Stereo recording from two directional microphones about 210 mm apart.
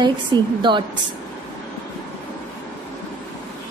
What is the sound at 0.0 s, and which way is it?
Speech, 20° right (ahead or behind).